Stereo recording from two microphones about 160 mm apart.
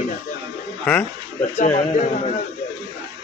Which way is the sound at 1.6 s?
45° left (ahead or behind).